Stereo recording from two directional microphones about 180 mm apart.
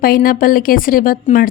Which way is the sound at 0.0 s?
55° left (ahead or behind).